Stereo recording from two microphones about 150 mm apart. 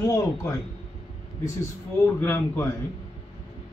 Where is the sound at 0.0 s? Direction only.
20° left (ahead or behind).